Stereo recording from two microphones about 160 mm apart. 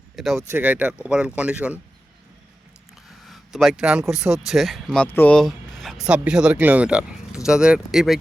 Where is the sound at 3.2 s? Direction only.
Centre (ahead or behind).